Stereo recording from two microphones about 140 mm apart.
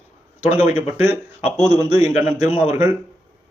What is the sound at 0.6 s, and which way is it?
A man's voice, 15° right (ahead or behind).